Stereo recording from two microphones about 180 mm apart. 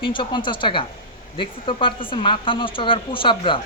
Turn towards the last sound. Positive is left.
turn(degrees=25)  # may be behind; listen again after turning